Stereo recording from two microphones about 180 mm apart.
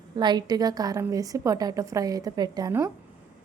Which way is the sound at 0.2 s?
25° right (ahead or behind).